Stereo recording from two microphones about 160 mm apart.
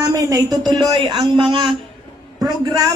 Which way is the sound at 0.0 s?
20° right (ahead or behind).